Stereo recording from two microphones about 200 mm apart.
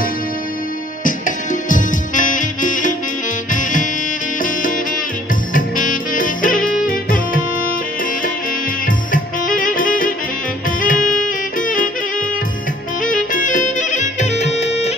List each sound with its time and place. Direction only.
1.0 s music: 40° left (ahead or behind)
4.4 s music: 40° left (ahead or behind)
8.8 s music: 45° left (ahead or behind)
13.0 s music: 40° left (ahead or behind)